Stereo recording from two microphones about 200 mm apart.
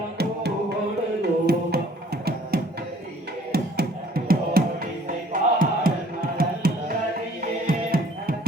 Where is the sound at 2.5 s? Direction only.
50° right (ahead or behind).